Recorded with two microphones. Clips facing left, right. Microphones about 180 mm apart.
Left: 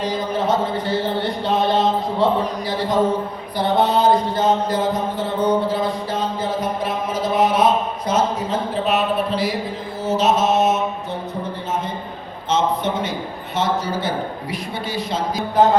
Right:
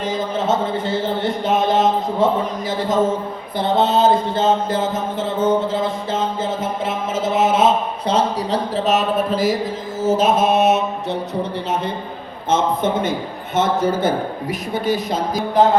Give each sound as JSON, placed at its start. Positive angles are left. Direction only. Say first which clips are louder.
{"t": 0.0, "sound": "mantra", "louder": "even", "side_deg": -25}
{"t": 12.5, "sound": "a man's voice", "louder": "right 2 dB", "side_deg": -50}